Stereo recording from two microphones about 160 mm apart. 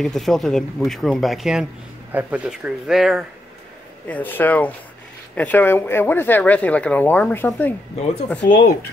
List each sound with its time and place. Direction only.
0.0 s speech: centre (ahead or behind)
4.1 s speech: 10° left (ahead or behind)
8.4 s speech: 65° left (ahead or behind)